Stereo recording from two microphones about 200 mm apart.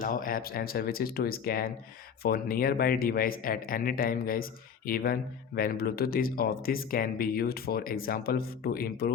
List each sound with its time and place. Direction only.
0.0 s speech: 45° left (ahead or behind)